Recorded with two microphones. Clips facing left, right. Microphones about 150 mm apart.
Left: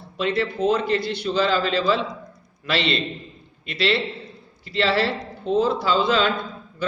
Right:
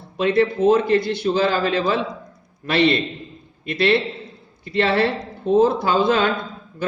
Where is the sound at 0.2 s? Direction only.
55° right (ahead or behind).